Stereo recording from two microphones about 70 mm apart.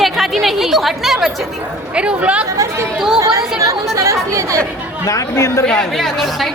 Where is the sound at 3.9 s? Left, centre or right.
Right.